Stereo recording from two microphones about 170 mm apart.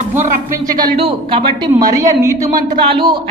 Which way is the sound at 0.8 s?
30° right (ahead or behind).